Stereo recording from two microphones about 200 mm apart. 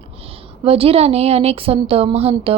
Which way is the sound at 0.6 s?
30° right (ahead or behind).